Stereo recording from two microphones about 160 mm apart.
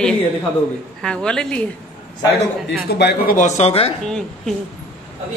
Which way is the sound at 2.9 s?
90° left.